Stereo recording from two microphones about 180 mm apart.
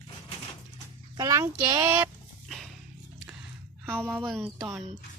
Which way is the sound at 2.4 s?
Centre (ahead or behind).